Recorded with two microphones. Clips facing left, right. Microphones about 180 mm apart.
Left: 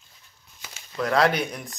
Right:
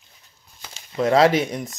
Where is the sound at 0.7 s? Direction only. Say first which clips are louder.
Right 6 dB; 25° right (ahead or behind).